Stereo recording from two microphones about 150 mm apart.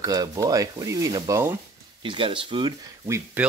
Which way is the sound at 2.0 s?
35° right (ahead or behind).